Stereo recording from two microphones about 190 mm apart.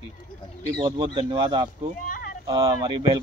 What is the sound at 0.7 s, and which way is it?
Speech, 25° right (ahead or behind).